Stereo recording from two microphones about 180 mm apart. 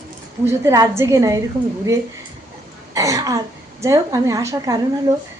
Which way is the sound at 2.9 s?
20° right (ahead or behind).